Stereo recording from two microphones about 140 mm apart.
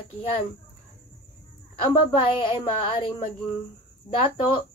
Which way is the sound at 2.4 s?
40° left (ahead or behind).